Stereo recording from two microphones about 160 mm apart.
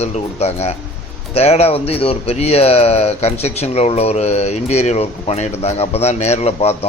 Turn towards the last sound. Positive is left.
turn(degrees=40)  # may be behind; listen again after turning